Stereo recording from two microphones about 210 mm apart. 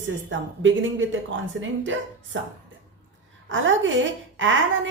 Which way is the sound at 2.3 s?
65° right (ahead or behind).